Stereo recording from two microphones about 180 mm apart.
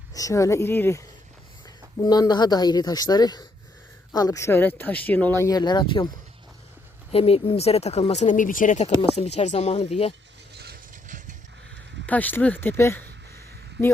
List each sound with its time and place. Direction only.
0.1 s a woman's voice: 20° left (ahead or behind); by 10.2 s 35° left (ahead or behind)
10.5 s vehicle: 65° right (ahead or behind)
10.9 s a sound: 45° right (ahead or behind)
12.0 s speech: 10° left (ahead or behind)